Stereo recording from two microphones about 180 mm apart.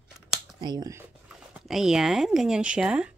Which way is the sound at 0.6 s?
20° right (ahead or behind).